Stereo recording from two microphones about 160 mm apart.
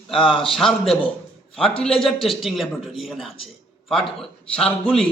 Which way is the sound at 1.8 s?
Centre (ahead or behind).